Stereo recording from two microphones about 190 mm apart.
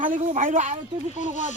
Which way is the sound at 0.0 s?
45° right (ahead or behind).